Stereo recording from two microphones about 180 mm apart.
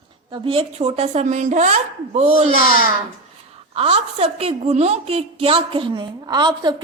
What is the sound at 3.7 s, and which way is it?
A woman's voice, 35° right (ahead or behind).